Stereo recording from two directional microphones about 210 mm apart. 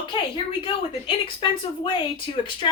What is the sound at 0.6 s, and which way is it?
Speech, 25° left (ahead or behind).